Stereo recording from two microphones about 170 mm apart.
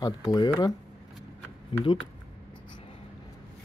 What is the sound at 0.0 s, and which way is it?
Speech, 20° left (ahead or behind).